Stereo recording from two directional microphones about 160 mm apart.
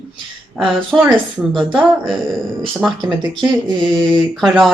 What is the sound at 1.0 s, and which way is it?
Speech, centre (ahead or behind).